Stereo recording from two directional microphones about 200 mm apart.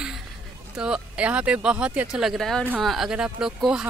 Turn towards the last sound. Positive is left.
turn(degrees=-5)  # may be behind; listen again after turning